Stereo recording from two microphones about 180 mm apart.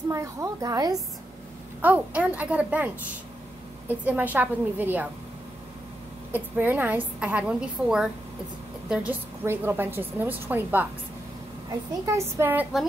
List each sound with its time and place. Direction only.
0.1 s a woman's voice: 15° right (ahead or behind)
1.8 s a woman's voice: 10° right (ahead or behind)
6.3 s a woman's voice: 10° right (ahead or behind)
12.2 s a woman's voice: 10° right (ahead or behind)